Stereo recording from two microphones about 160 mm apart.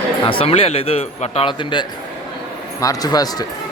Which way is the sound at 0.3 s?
35° left (ahead or behind).